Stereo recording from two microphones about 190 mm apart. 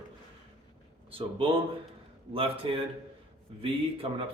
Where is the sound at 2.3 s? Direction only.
30° right (ahead or behind).